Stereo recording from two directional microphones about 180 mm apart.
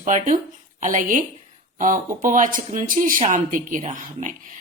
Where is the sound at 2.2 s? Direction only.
45° right (ahead or behind).